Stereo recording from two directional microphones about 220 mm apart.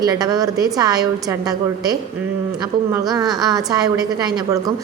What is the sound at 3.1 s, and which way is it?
A woman's voice, 15° right (ahead or behind).